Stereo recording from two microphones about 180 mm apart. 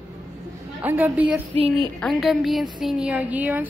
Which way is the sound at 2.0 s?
Centre (ahead or behind).